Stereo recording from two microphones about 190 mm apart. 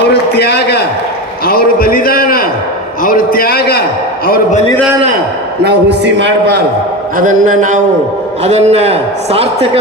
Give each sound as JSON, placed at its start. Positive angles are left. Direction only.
{"t": 0.1, "sound": "a sound", "side_deg": 60}
{"t": 5.6, "sound": "a man's voice", "side_deg": -65}
{"t": 7.2, "sound": "a man's voice", "side_deg": -45}